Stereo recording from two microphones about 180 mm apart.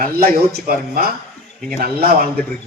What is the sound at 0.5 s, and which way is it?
A man's voice, 55° right (ahead or behind).